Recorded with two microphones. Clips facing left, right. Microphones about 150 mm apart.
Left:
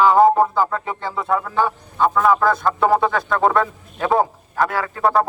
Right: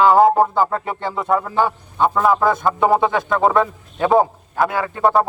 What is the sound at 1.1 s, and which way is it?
A man's voice, 20° right (ahead or behind).